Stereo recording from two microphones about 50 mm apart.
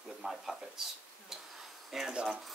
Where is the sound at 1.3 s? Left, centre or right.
Centre.